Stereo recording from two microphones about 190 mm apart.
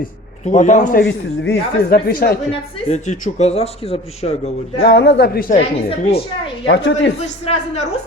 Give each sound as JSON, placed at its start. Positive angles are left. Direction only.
{"t": 0.0, "sound": "a man's voice", "side_deg": 40}
{"t": 1.0, "sound": "speech", "side_deg": 55}
{"t": 2.9, "sound": "a man's voice", "side_deg": 40}
{"t": 4.9, "sound": "speech", "side_deg": 65}
{"t": 6.0, "sound": "a man's voice", "side_deg": 30}
{"t": 6.7, "sound": "speech", "side_deg": 70}
{"t": 7.4, "sound": "a man's voice", "side_deg": 35}